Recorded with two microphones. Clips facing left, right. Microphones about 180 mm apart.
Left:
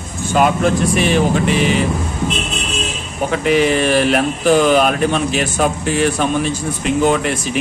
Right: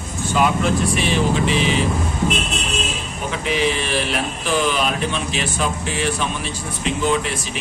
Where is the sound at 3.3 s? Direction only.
50° left (ahead or behind).